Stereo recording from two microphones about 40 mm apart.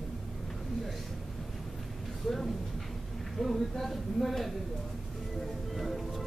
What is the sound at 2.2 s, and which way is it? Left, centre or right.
A man's voice, centre.